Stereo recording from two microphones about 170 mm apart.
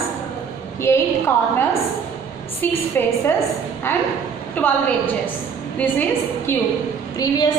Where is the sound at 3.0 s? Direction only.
10° left (ahead or behind).